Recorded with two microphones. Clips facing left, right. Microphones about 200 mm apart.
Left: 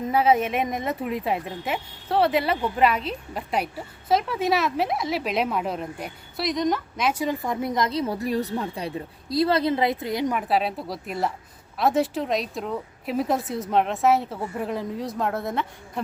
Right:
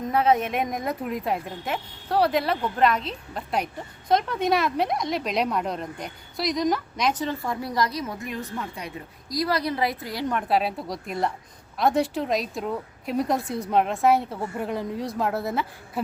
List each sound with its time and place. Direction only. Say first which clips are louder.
0.0 s a woman's voice: left 1 dB; 5° left (ahead or behind); by 10.3 s 20° left (ahead or behind)
10.3 s speech: even; centre (ahead or behind)